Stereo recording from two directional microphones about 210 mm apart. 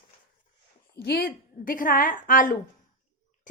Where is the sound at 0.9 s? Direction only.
50° left (ahead or behind).